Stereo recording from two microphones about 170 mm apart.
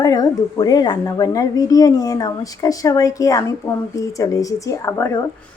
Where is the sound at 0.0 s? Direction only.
20° left (ahead or behind).